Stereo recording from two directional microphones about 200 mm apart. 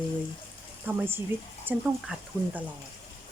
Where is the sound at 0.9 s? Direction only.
10° right (ahead or behind).